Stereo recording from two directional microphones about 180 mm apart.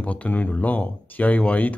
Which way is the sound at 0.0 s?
10° left (ahead or behind).